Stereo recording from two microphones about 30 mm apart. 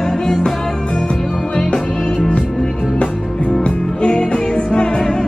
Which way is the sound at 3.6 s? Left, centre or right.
Left.